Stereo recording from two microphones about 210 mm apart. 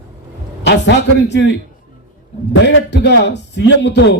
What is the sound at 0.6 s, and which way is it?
Speech, 55° left (ahead or behind).